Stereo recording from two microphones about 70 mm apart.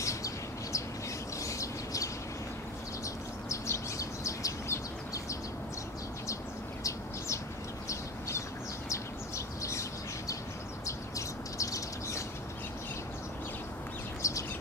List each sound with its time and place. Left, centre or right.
0.0 s bird: left
1.4 s bird: left
3.4 s bird: left
7.9 s bird: left
14.2 s bird: left